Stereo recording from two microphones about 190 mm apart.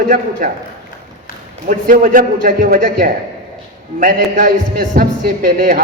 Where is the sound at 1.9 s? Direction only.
45° right (ahead or behind).